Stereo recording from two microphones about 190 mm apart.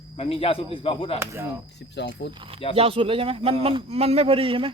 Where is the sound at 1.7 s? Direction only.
65° left (ahead or behind).